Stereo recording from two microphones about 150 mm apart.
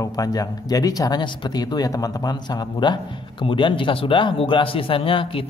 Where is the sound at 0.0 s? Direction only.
25° left (ahead or behind).